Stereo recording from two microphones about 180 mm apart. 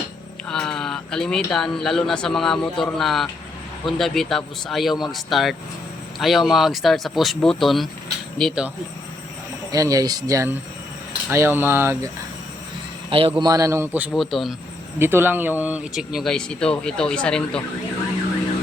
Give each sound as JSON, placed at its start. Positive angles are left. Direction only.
{"t": 0.4, "sound": "a man's voice", "side_deg": 5}
{"t": 9.7, "sound": "speech", "side_deg": -20}
{"t": 13.1, "sound": "a man's voice", "side_deg": -30}
{"t": 13.4, "sound": "speech", "side_deg": -20}
{"t": 14.1, "sound": "speech", "side_deg": 0}
{"t": 14.9, "sound": "speech", "side_deg": -10}